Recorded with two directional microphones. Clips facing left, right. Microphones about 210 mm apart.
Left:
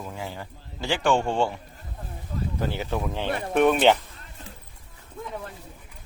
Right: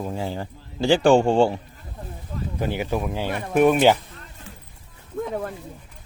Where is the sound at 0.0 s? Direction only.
35° right (ahead or behind).